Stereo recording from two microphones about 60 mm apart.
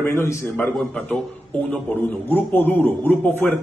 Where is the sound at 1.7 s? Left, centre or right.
Left.